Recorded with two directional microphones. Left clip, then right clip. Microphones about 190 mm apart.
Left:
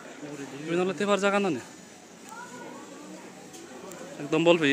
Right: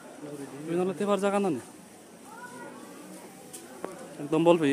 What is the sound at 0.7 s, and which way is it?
Speech, 10° right (ahead or behind).